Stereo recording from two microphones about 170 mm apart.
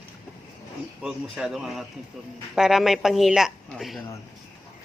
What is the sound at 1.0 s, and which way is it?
Speech, centre (ahead or behind).